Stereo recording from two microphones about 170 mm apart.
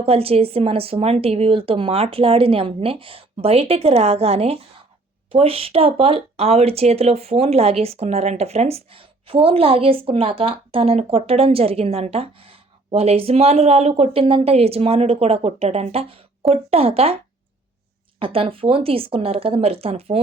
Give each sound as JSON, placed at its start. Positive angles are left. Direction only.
{"t": 0.0, "sound": "speech", "side_deg": -35}
{"t": 18.2, "sound": "speech", "side_deg": -35}